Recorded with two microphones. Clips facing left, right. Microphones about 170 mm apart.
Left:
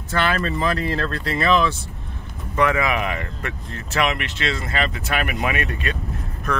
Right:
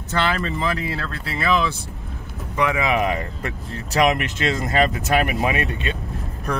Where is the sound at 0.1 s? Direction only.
15° right (ahead or behind).